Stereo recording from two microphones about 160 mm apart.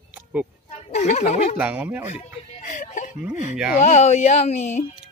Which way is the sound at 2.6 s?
55° left (ahead or behind).